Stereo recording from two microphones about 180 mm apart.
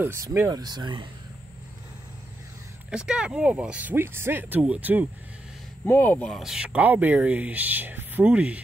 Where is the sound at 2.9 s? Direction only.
5° right (ahead or behind).